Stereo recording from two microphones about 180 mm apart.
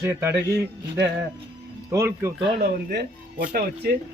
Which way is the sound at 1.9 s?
15° right (ahead or behind).